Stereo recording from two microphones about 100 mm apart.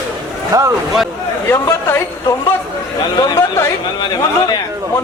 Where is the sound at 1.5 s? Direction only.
25° left (ahead or behind).